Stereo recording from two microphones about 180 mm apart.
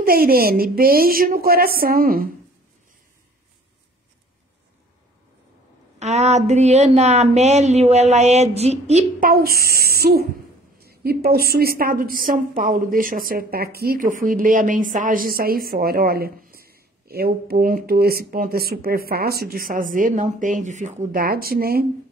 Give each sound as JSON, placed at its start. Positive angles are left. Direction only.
{"t": 0.0, "sound": "a woman's voice", "side_deg": -55}
{"t": 5.9, "sound": "a woman's voice", "side_deg": -40}